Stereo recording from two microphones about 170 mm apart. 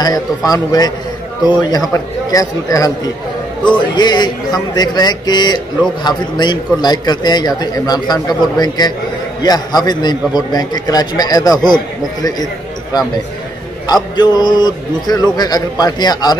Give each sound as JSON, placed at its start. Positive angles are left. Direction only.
{"t": 0.0, "sound": "a man's voice", "side_deg": 20}
{"t": 3.9, "sound": "a man's voice", "side_deg": 25}
{"t": 14.1, "sound": "a man's voice", "side_deg": 25}